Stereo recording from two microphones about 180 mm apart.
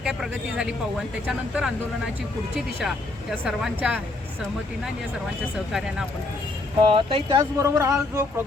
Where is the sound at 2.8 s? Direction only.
Centre (ahead or behind).